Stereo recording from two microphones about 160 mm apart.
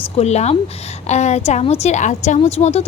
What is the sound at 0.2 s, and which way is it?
A woman's voice, 45° left (ahead or behind).